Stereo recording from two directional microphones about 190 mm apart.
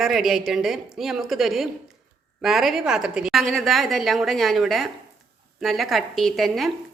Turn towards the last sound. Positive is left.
turn(degrees=0)  # may be behind; listen again after turning